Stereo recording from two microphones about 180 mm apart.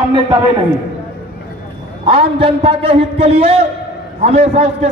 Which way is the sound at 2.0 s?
30° right (ahead or behind).